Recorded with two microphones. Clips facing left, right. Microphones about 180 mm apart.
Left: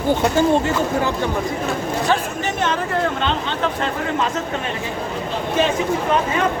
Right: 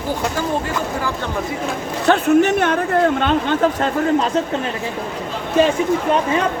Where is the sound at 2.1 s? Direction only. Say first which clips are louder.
Right 14 dB; 60° right (ahead or behind); by 4.2 s 45° right (ahead or behind).